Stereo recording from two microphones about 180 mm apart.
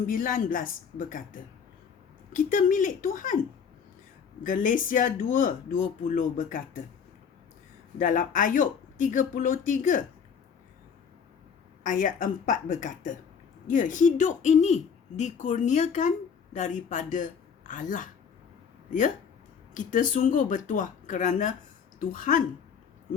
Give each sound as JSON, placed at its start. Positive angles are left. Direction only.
{"t": 0.0, "sound": "speech", "side_deg": 50}
{"t": 4.4, "sound": "speech", "side_deg": 45}
{"t": 7.9, "sound": "speech", "side_deg": 45}
{"t": 11.8, "sound": "speech", "side_deg": 45}